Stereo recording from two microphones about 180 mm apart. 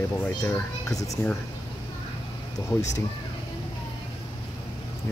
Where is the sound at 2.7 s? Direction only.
20° left (ahead or behind).